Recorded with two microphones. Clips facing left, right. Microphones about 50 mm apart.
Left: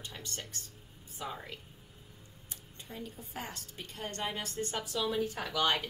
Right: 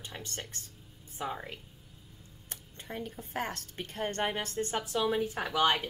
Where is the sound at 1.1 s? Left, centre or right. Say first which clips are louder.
Right 4 dB; right.